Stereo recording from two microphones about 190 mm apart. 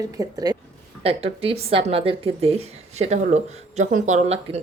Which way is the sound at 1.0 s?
30° right (ahead or behind).